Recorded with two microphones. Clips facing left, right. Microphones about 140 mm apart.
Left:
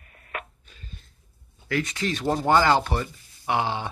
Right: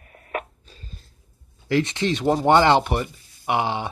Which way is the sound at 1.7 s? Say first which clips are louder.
Right 5 dB; 25° right (ahead or behind).